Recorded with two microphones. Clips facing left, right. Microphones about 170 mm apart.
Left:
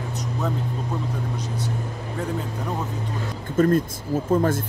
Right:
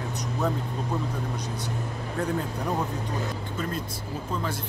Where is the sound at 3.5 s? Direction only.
50° left (ahead or behind).